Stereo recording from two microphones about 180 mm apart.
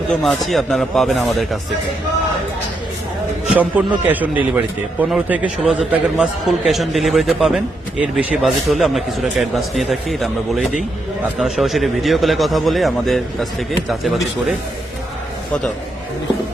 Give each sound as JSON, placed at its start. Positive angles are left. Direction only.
{"t": 0.2, "sound": "a man's voice", "side_deg": 0}
{"t": 3.5, "sound": "a man's voice", "side_deg": -10}